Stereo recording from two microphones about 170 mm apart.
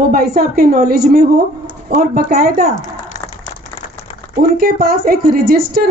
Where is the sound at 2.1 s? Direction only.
65° right (ahead or behind).